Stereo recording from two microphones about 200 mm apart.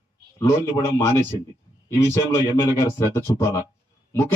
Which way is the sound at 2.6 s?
15° left (ahead or behind).